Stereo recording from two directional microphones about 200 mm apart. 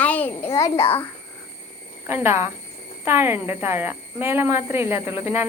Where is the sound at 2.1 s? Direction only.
10° right (ahead or behind).